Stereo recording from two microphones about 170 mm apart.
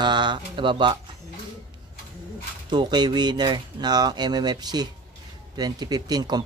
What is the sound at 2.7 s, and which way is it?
Speech, 25° right (ahead or behind).